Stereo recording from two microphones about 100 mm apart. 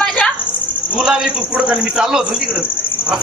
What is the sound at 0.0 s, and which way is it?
Cricket, 5° left (ahead or behind).